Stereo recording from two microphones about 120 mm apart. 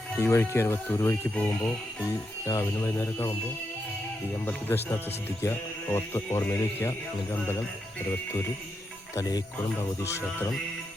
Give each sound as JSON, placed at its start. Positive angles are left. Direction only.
{"t": 0.2, "sound": "speech", "side_deg": 20}
{"t": 4.7, "sound": "speech", "side_deg": 20}